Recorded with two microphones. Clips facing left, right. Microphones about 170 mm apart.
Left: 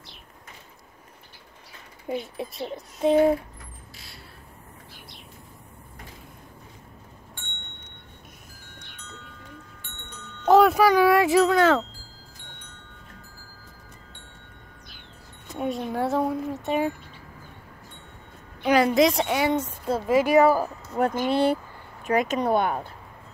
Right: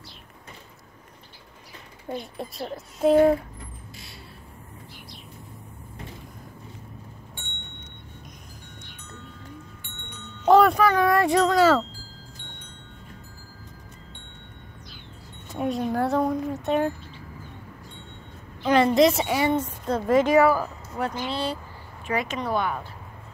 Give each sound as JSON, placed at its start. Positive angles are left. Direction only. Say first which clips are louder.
{"t": 2.0, "sound": "speech", "louder": "left 2 dB", "side_deg": 5}
{"t": 10.5, "sound": "speech", "louder": "left 1 dB", "side_deg": 5}
{"t": 15.5, "sound": "speech", "louder": "right 2 dB", "side_deg": 0}
{"t": 18.6, "sound": "a woman's voice", "louder": "right 1 dB", "side_deg": 10}
{"t": 21.0, "sound": "speech", "louder": "left 6 dB", "side_deg": 50}
{"t": 22.0, "sound": "speech", "louder": "left 5 dB", "side_deg": 45}